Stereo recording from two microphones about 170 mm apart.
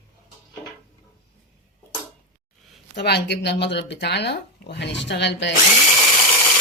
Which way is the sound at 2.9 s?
75° left (ahead or behind).